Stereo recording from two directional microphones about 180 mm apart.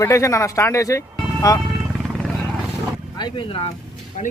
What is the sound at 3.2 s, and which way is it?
Speech, 25° left (ahead or behind).